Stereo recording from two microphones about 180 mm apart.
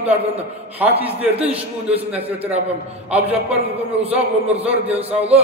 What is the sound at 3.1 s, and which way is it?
A man's voice, 10° right (ahead or behind).